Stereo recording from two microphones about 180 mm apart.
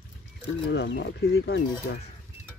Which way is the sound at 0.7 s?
75° left (ahead or behind).